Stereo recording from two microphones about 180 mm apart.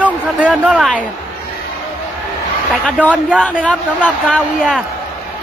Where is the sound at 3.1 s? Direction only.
5° right (ahead or behind).